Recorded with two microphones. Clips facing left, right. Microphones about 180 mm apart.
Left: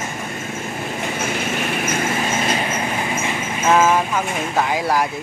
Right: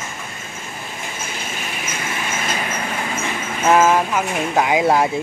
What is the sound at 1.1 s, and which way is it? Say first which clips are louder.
Train: left 8 dB; 65° left (ahead or behind).